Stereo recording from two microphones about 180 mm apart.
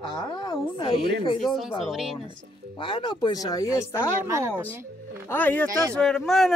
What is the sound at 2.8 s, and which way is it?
Speech, 25° left (ahead or behind).